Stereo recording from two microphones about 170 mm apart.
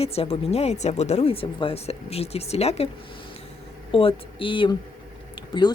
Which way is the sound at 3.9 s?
30° left (ahead or behind).